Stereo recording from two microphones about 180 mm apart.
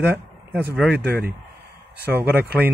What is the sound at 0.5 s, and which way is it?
Speech, 10° right (ahead or behind).